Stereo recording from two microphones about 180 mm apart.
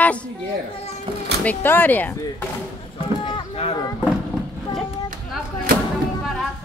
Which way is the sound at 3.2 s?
25° left (ahead or behind).